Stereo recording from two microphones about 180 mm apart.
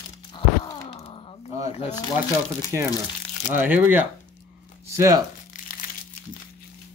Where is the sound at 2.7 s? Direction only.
20° right (ahead or behind).